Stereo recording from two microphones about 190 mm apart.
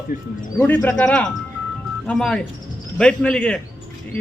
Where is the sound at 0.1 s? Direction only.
50° left (ahead or behind).